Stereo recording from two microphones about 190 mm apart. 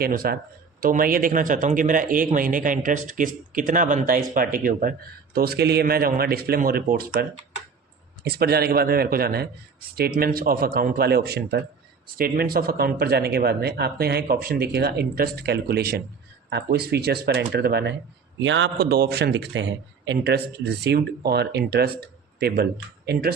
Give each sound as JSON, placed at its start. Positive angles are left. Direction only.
{"t": 0.0, "sound": "a man's voice", "side_deg": -50}
{"t": 18.3, "sound": "a man's voice", "side_deg": -80}